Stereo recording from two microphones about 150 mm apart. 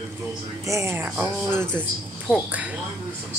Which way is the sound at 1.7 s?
5° left (ahead or behind).